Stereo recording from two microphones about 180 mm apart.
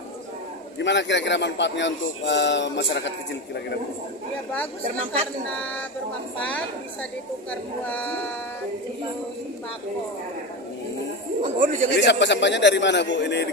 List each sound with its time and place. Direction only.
0.7 s a man's voice: 80° left
6.4 s a woman's voice: 5° left (ahead or behind)
11.4 s speech: 45° right (ahead or behind)
11.9 s a man's voice: 75° left (ahead or behind)